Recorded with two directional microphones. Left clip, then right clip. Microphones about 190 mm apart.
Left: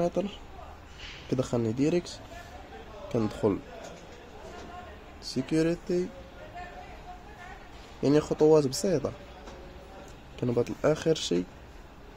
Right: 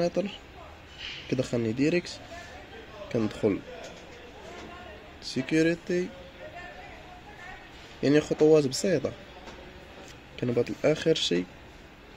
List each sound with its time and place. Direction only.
0.0 s speech: centre (ahead or behind)
5.2 s speech: centre (ahead or behind)
8.0 s speech: centre (ahead or behind)
10.4 s speech: centre (ahead or behind)